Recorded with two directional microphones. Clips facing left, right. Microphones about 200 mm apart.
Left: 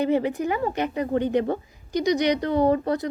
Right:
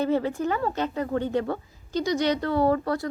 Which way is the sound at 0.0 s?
15° left (ahead or behind).